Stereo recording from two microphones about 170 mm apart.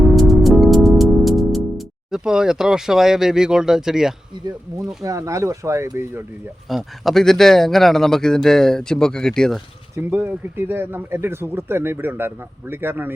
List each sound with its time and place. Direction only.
0.2 s music: centre (ahead or behind)
2.0 s speech: 5° right (ahead or behind)
5.0 s speech: 20° right (ahead or behind)
6.7 s speech: centre (ahead or behind)
10.1 s speech: 15° right (ahead or behind)